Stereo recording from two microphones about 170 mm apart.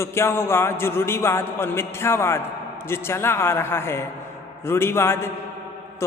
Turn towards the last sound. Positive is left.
turn(degrees=15)  # may be behind; listen again after turning